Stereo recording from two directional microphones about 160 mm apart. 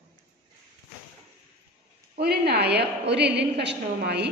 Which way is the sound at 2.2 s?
90° right.